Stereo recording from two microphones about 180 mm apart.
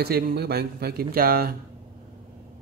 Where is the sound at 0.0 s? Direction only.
60° right (ahead or behind).